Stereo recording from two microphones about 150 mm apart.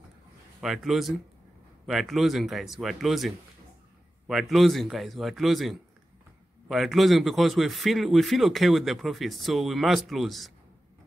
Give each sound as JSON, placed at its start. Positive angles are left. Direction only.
{"t": 0.6, "sound": "speech", "side_deg": 0}